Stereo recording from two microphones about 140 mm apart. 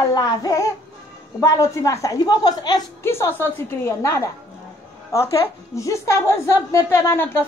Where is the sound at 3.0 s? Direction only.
15° left (ahead or behind).